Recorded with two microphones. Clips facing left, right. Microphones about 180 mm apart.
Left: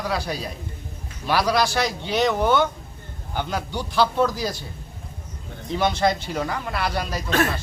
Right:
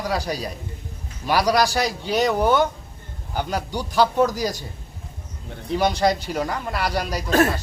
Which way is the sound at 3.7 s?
15° right (ahead or behind).